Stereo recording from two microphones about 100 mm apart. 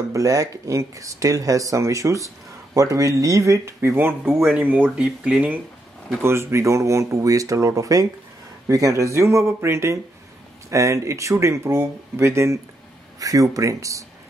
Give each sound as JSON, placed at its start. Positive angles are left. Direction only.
{"t": 0.1, "sound": "speech", "side_deg": -35}
{"t": 6.2, "sound": "speech", "side_deg": -25}